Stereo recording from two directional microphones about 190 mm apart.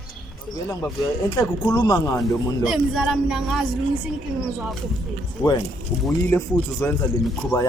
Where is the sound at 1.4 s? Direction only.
20° left (ahead or behind).